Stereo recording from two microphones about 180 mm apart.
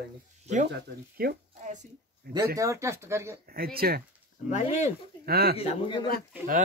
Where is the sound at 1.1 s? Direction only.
50° right (ahead or behind).